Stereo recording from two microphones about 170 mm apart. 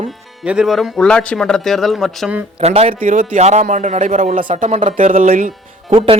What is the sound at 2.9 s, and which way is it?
Speech, 50° right (ahead or behind).